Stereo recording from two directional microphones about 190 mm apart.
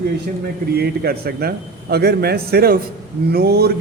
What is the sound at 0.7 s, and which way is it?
A man's voice, 55° right (ahead or behind).